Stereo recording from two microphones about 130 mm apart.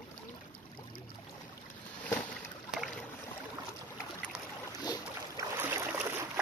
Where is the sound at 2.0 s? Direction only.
10° left (ahead or behind).